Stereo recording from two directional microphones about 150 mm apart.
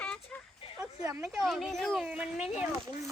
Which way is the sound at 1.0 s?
15° right (ahead or behind).